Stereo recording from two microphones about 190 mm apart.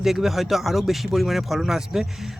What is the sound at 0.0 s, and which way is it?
Speech, centre (ahead or behind).